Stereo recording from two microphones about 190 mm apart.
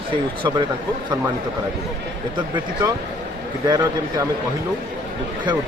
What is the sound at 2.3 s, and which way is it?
Speech, 25° right (ahead or behind).